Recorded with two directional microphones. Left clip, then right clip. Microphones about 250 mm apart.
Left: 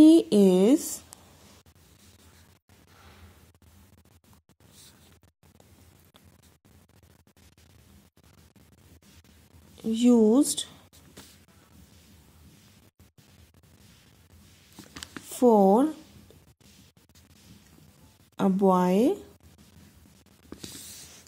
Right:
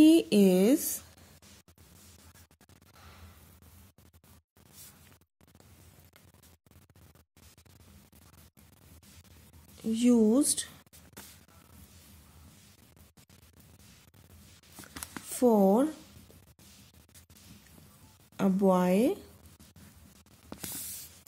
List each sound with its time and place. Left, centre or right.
0.0 s speech: centre
9.8 s speech: centre
15.2 s speech: centre
18.3 s speech: centre